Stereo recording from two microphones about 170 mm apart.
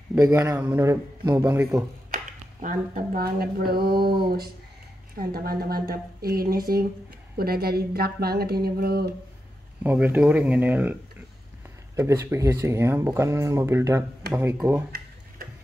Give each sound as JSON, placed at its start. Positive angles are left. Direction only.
{"t": 0.1, "sound": "speech", "side_deg": -15}
{"t": 2.1, "sound": "a woman's voice", "side_deg": -50}
{"t": 9.8, "sound": "speech", "side_deg": -10}